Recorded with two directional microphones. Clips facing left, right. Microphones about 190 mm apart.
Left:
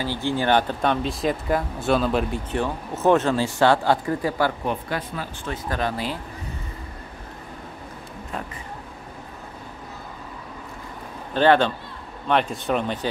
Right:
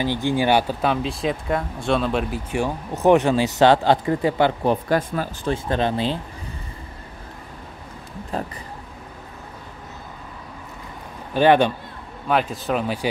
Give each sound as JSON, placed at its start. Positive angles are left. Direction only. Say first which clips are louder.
{"t": 0.0, "sound": "speech", "louder": "right 3 dB", "side_deg": -15}
{"t": 2.5, "sound": "speech", "louder": "right 3 dB", "side_deg": -15}
{"t": 4.6, "sound": "speech", "louder": "right 7 dB", "side_deg": -45}
{"t": 5.5, "sound": "speech", "louder": "right 5 dB", "side_deg": -25}
{"t": 11.3, "sound": "a man's voice", "louder": "right 2 dB", "side_deg": -15}
{"t": 12.3, "sound": "speech", "louder": "even", "side_deg": 0}